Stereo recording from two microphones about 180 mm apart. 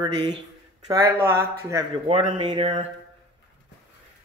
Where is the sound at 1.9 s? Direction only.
30° right (ahead or behind).